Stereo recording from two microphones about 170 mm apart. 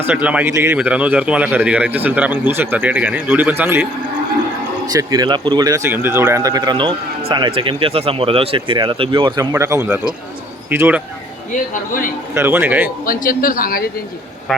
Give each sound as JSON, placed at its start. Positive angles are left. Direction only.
{"t": 0.0, "sound": "a man's voice", "side_deg": -10}
{"t": 4.9, "sound": "speech", "side_deg": -20}
{"t": 9.4, "sound": "a man's voice", "side_deg": -15}
{"t": 11.5, "sound": "a man's voice", "side_deg": 50}
{"t": 12.3, "sound": "a man's voice", "side_deg": -15}
{"t": 13.1, "sound": "speech", "side_deg": 55}